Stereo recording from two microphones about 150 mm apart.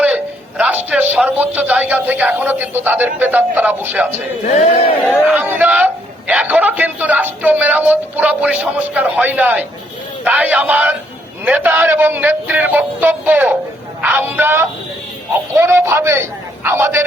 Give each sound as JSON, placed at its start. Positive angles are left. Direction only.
{"t": 0.0, "sound": "a man's voice", "side_deg": -10}
{"t": 4.7, "sound": "speech", "side_deg": 40}
{"t": 5.3, "sound": "a man's voice", "side_deg": -10}